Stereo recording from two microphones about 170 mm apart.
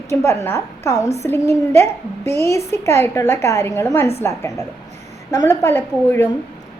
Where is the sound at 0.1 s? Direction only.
15° left (ahead or behind).